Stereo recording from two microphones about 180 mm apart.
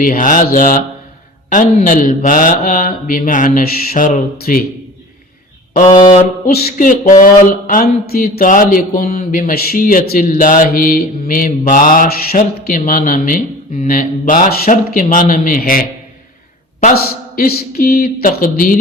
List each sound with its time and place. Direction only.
0.0 s speech: 50° left (ahead or behind)
5.9 s speech: 45° left (ahead or behind)
16.9 s speech: 55° left (ahead or behind)